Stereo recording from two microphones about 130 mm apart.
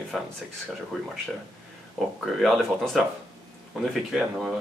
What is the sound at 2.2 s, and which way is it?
Speech, centre (ahead or behind).